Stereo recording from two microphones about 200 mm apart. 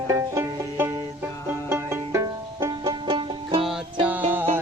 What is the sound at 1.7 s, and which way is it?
Music, 15° right (ahead or behind).